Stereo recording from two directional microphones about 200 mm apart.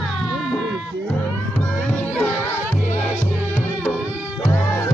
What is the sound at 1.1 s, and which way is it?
Music, 10° left (ahead or behind).